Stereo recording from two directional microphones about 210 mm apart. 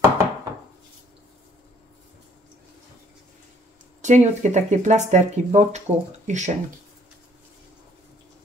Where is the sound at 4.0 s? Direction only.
35° right (ahead or behind).